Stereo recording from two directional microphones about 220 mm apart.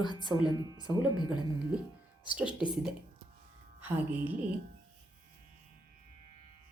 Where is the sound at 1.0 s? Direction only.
20° left (ahead or behind).